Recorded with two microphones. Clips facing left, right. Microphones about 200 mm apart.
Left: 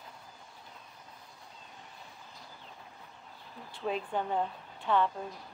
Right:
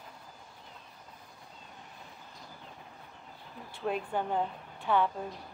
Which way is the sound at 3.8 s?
5° right (ahead or behind).